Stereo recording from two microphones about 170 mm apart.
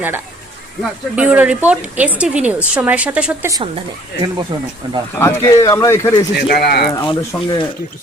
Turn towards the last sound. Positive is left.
turn(degrees=25)  # may be behind; listen again after turning